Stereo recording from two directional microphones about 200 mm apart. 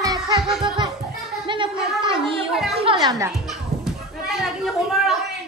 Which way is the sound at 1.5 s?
25° right (ahead or behind).